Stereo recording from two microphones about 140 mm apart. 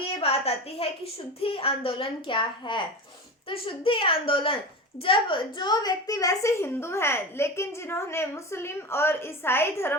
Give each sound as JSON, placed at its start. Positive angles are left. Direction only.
{"t": 0.2, "sound": "a woman's voice", "side_deg": 45}